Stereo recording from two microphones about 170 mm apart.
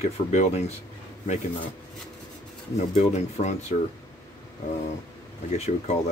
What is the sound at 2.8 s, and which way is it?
Speech, 40° left (ahead or behind).